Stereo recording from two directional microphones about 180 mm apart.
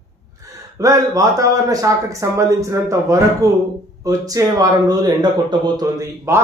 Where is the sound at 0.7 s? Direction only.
20° right (ahead or behind).